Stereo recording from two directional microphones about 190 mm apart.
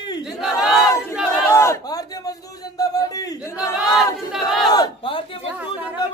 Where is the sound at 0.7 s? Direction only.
15° left (ahead or behind).